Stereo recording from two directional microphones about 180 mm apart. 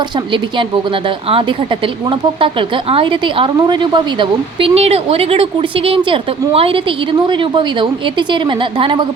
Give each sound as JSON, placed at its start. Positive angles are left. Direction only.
{"t": 1.0, "sound": "a woman's voice", "side_deg": -30}